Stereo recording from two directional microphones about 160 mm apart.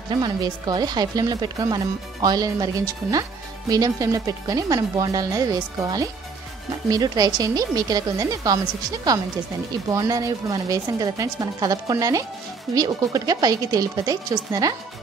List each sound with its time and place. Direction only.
0.1 s speech: 25° right (ahead or behind)